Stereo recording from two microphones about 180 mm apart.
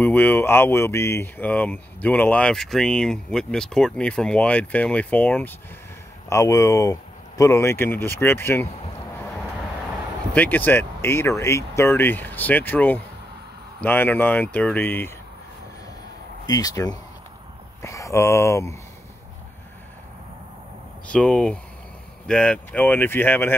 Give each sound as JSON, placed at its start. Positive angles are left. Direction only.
{"t": 0.0, "sound": "speech", "side_deg": 10}
{"t": 10.3, "sound": "speech", "side_deg": 10}
{"t": 16.4, "sound": "speech", "side_deg": 20}
{"t": 21.1, "sound": "speech", "side_deg": 5}